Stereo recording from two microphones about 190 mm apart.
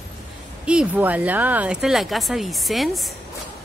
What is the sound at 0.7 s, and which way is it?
A woman's voice, 5° right (ahead or behind).